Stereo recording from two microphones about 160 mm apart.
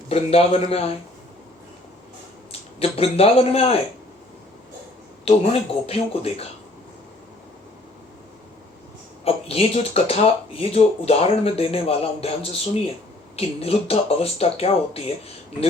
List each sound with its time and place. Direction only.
0.1 s speech: 40° left (ahead or behind)
2.5 s speech: 40° left (ahead or behind)
5.3 s speech: 40° left (ahead or behind)
9.2 s speech: 40° left (ahead or behind)